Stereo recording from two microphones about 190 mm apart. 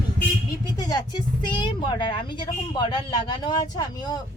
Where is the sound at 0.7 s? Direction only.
20° left (ahead or behind).